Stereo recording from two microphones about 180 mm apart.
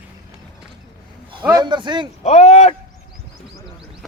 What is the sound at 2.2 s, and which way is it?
Speech, 35° left (ahead or behind).